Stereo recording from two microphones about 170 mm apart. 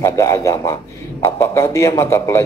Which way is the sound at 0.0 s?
20° left (ahead or behind).